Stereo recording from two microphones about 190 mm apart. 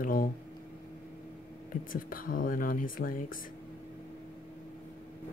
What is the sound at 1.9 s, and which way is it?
Speech, 45° left (ahead or behind).